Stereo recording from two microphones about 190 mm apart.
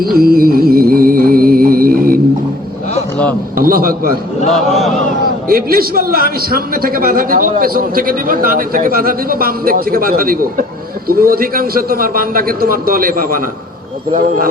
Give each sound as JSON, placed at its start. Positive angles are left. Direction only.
{"t": 0.0, "sound": "music", "side_deg": -50}
{"t": 3.5, "sound": "a man's voice", "side_deg": -50}
{"t": 4.5, "sound": "speech", "side_deg": 0}
{"t": 5.5, "sound": "a man's voice", "side_deg": -50}